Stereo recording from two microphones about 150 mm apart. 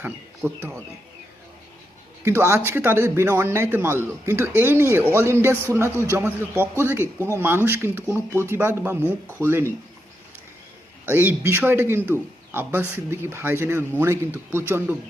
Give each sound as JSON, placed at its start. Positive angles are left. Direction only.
{"t": 0.0, "sound": "a man's voice", "side_deg": -10}
{"t": 2.2, "sound": "a man's voice", "side_deg": -15}
{"t": 11.0, "sound": "a man's voice", "side_deg": -15}